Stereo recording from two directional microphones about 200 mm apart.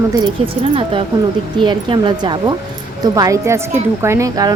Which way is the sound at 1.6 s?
25° right (ahead or behind).